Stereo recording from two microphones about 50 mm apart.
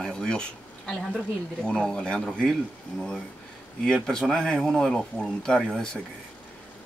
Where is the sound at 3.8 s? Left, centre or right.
Centre.